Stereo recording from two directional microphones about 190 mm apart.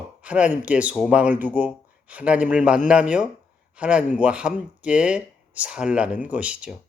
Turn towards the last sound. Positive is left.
turn(degrees=-5)  # may be behind; listen again after turning